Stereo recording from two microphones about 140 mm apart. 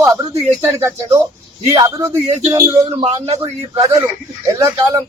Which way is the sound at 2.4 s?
25° right (ahead or behind).